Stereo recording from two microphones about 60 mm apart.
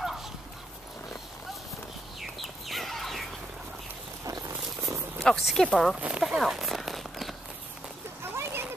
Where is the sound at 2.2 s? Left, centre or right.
Centre.